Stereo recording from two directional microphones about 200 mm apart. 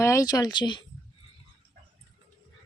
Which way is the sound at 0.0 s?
15° left (ahead or behind).